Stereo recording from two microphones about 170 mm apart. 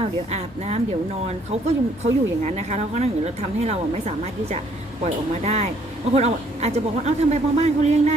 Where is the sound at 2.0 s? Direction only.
40° right (ahead or behind).